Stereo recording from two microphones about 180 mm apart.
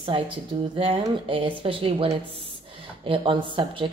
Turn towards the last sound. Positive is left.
turn(degrees=-30)  # may be behind; listen again after turning